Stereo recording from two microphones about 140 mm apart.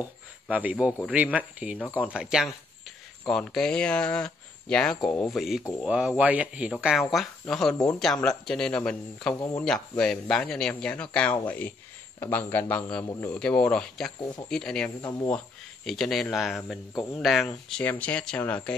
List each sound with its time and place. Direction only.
0.5 s speech: 10° right (ahead or behind); by 9.3 s 5° left (ahead or behind)
9.3 s speech: 25° left (ahead or behind)
9.6 s speech: 5° left (ahead or behind)